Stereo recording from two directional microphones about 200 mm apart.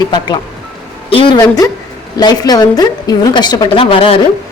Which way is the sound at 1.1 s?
25° left (ahead or behind).